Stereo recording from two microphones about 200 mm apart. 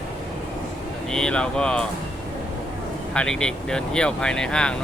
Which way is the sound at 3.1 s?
5° left (ahead or behind).